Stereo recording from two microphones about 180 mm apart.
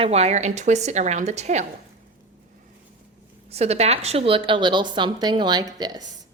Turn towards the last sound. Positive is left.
turn(degrees=-20)  # may be behind; listen again after turning